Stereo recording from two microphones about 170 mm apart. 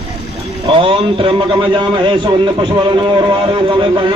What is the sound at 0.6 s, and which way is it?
A man's voice, 30° right (ahead or behind).